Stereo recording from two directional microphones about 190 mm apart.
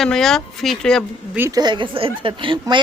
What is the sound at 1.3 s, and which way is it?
Speech, 15° right (ahead or behind).